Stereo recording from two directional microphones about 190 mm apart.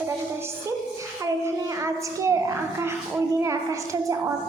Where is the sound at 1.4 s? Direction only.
15° right (ahead or behind).